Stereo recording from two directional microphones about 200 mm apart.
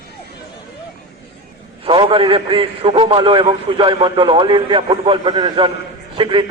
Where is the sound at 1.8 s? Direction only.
25° right (ahead or behind).